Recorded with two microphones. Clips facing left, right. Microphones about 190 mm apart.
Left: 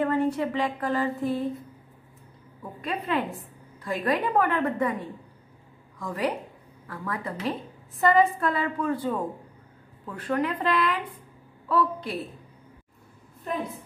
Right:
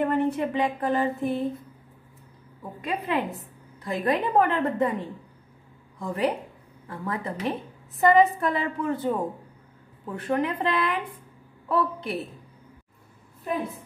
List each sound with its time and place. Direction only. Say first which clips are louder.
0.0 s speech: even; 20° right (ahead or behind)
2.8 s a woman's voice: right 1 dB; 15° right (ahead or behind)
5.9 s a woman's voice: right 2 dB; 25° right (ahead or behind)